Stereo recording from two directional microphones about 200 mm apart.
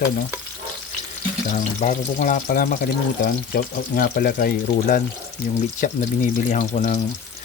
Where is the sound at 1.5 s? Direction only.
35° left (ahead or behind).